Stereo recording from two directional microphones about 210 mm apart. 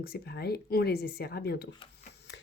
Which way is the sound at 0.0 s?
50° left (ahead or behind).